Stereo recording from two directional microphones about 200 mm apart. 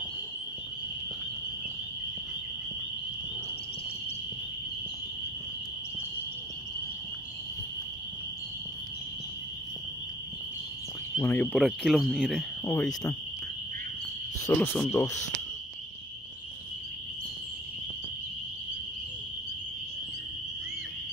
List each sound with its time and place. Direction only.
11.1 s speech: 10° left (ahead or behind)
11.5 s speech: centre (ahead or behind)
14.4 s speech: 15° left (ahead or behind)